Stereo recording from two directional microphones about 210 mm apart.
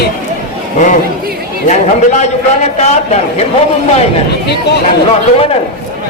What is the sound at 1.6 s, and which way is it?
A man's voice, 35° left (ahead or behind).